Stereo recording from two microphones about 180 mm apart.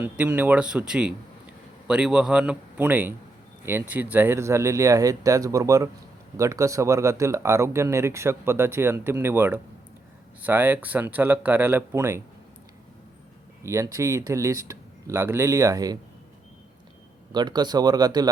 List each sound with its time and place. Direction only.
0.0 s a man's voice: 10° right (ahead or behind)
13.7 s speech: 15° right (ahead or behind)
17.3 s speech: 25° right (ahead or behind)